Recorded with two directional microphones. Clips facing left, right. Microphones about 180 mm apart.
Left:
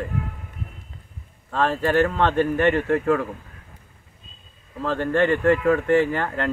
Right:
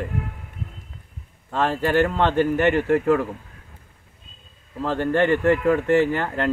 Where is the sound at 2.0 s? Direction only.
25° right (ahead or behind).